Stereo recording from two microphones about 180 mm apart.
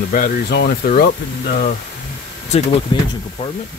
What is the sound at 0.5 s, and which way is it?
Speech, 65° left (ahead or behind).